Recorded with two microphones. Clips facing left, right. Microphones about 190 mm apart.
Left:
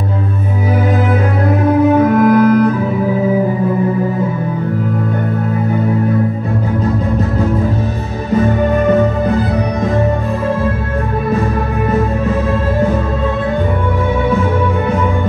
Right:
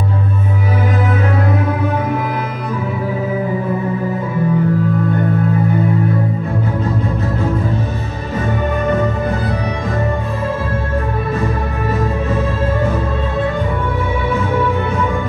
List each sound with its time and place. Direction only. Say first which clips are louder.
2.2 s music: left 13 dB; 50° left (ahead or behind)